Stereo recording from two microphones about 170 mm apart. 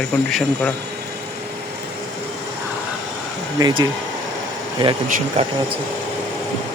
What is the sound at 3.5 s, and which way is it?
Speech, 25° right (ahead or behind).